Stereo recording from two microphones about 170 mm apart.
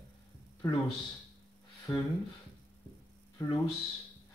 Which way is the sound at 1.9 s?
20° left (ahead or behind).